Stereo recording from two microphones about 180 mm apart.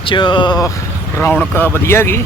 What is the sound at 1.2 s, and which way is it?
Speech, 10° left (ahead or behind).